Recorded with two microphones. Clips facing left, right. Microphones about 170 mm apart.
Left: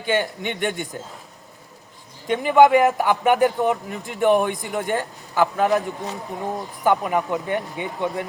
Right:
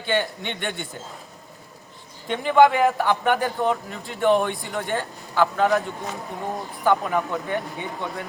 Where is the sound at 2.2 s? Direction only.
10° left (ahead or behind).